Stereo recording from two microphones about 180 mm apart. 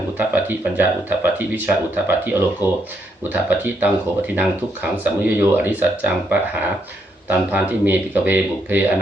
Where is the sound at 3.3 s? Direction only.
10° right (ahead or behind).